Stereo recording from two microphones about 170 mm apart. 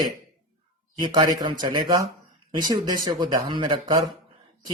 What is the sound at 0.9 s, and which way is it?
Speech, 25° right (ahead or behind).